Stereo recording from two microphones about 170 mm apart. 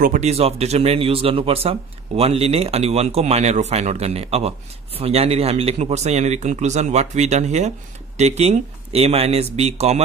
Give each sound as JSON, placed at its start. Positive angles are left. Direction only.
{"t": 0.0, "sound": "speech", "side_deg": -45}